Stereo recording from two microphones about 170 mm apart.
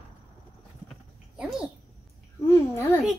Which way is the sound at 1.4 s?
5° right (ahead or behind).